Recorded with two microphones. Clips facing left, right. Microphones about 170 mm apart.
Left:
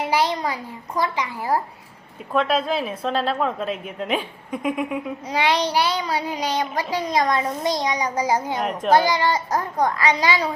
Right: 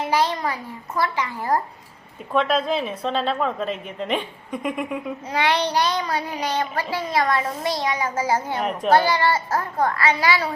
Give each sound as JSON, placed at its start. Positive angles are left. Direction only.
{"t": 0.0, "sound": "child singing", "side_deg": 10}
{"t": 2.3, "sound": "a woman's voice", "side_deg": 0}
{"t": 5.3, "sound": "child singing", "side_deg": 10}